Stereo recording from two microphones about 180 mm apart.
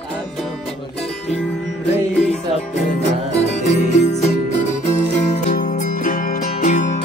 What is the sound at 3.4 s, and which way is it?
Music, 40° left (ahead or behind).